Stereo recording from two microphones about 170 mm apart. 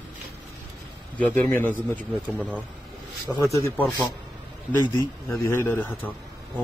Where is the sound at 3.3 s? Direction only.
10° right (ahead or behind).